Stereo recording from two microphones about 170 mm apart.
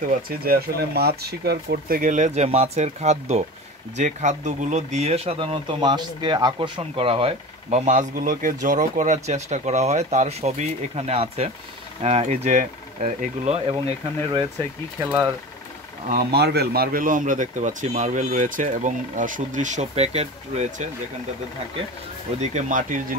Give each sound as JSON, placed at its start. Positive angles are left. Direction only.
{"t": 0.4, "sound": "speech", "side_deg": -65}
{"t": 15.0, "sound": "speech", "side_deg": -15}
{"t": 16.1, "sound": "speech", "side_deg": -70}
{"t": 22.4, "sound": "speech", "side_deg": -45}